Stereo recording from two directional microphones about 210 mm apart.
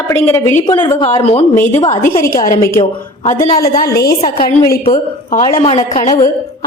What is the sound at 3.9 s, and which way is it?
Speech, 50° left (ahead or behind).